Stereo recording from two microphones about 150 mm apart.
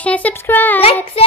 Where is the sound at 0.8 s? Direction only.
40° left (ahead or behind).